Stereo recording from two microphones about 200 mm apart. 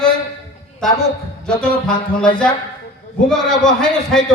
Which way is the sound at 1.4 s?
5° left (ahead or behind).